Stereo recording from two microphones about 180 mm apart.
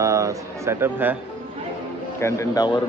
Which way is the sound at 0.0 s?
20° right (ahead or behind).